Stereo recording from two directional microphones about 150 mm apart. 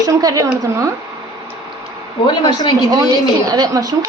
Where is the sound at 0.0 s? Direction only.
25° right (ahead or behind).